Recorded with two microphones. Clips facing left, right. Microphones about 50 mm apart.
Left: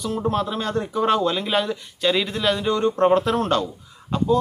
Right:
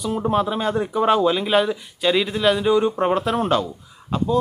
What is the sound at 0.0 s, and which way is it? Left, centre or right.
Speech, centre.